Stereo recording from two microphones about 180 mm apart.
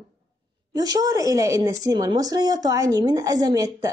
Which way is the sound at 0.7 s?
20° right (ahead or behind).